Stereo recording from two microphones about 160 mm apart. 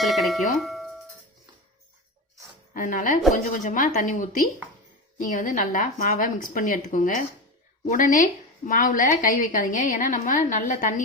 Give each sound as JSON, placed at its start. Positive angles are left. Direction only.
{"t": 0.0, "sound": "speech", "side_deg": 0}
{"t": 2.7, "sound": "a woman's voice", "side_deg": 55}